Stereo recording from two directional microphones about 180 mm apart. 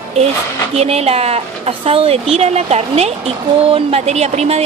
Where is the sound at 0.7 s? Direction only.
35° right (ahead or behind).